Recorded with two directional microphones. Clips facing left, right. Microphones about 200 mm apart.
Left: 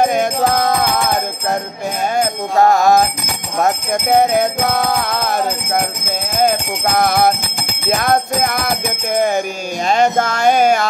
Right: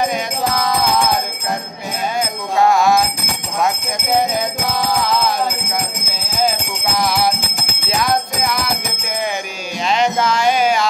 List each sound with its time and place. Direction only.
0.0 s music: 50° left (ahead or behind)
2.1 s music: 45° left (ahead or behind)
4.1 s music: 60° left (ahead or behind)